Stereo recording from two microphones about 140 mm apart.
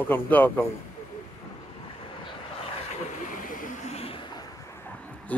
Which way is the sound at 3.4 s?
75° left (ahead or behind).